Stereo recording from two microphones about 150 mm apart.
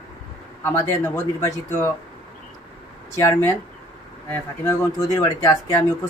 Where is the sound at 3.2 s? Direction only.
15° left (ahead or behind).